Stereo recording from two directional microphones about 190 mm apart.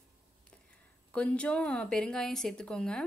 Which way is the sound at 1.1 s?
5° left (ahead or behind).